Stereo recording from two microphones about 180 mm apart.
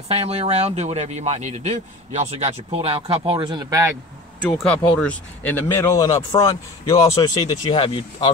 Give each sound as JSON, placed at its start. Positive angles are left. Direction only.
{"t": 0.1, "sound": "speech", "side_deg": -35}
{"t": 4.5, "sound": "speech", "side_deg": 5}